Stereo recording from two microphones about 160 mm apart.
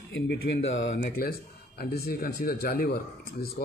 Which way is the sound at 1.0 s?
70° left (ahead or behind).